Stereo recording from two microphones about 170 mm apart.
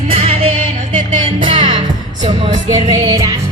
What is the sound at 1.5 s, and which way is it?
Music, 30° right (ahead or behind).